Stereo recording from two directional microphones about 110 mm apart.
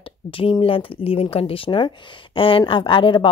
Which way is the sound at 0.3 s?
60° left (ahead or behind).